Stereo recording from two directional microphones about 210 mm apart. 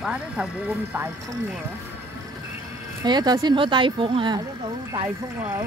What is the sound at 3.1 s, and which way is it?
A woman's voice, 20° right (ahead or behind).